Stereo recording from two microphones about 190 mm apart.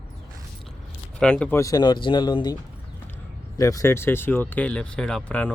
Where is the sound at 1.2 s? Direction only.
5° left (ahead or behind).